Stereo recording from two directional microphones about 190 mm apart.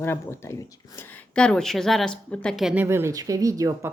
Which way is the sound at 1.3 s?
5° left (ahead or behind).